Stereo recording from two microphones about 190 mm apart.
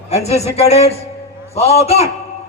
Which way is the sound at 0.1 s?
35° left (ahead or behind).